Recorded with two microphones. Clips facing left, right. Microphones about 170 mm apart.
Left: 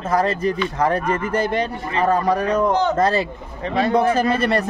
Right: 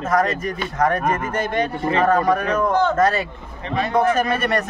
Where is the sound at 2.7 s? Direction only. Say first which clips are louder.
Even; 15° left (ahead or behind).